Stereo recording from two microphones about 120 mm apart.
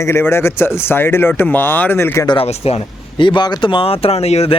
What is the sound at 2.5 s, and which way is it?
Speech, 60° left (ahead or behind).